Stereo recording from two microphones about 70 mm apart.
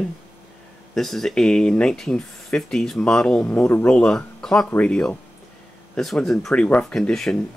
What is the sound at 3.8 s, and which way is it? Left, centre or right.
Speech, centre.